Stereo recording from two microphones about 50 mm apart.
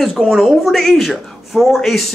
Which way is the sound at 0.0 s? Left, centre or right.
Centre.